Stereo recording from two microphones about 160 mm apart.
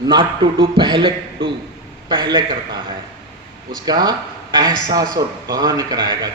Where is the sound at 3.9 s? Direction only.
25° right (ahead or behind).